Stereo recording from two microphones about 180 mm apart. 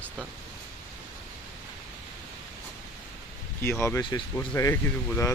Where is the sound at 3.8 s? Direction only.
15° left (ahead or behind).